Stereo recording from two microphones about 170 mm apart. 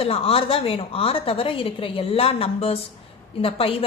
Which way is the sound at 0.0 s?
35° left (ahead or behind).